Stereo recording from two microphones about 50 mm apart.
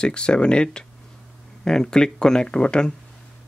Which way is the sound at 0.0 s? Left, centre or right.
Centre.